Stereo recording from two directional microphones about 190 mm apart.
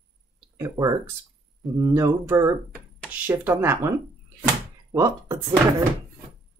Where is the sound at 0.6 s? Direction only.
15° right (ahead or behind).